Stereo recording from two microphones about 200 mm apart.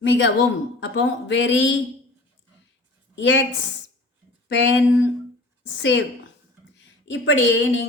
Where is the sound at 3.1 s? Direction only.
65° left (ahead or behind).